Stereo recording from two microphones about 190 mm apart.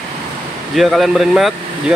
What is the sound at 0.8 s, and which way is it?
Speech, centre (ahead or behind).